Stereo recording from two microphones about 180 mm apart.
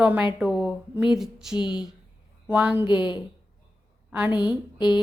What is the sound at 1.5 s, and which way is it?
Speech, 25° left (ahead or behind).